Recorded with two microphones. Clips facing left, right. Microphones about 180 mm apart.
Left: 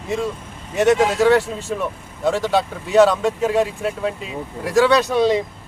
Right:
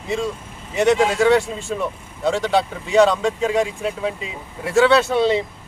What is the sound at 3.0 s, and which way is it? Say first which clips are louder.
Speech: left 1 dB; 10° left (ahead or behind).